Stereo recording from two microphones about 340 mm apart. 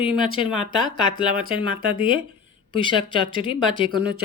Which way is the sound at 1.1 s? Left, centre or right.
Right.